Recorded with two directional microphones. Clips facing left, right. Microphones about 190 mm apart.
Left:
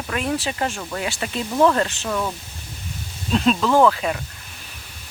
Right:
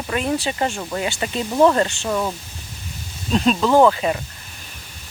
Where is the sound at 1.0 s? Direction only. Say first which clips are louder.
Right 1 dB; centre (ahead or behind).